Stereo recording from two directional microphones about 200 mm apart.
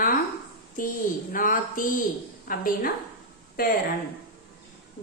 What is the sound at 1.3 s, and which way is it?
Speech, 45° left (ahead or behind).